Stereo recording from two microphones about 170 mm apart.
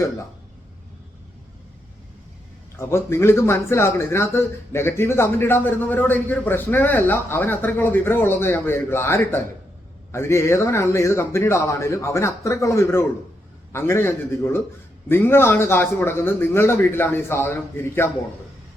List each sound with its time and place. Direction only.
2.7 s speech: 15° left (ahead or behind)